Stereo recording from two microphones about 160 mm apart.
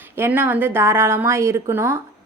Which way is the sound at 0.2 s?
10° right (ahead or behind).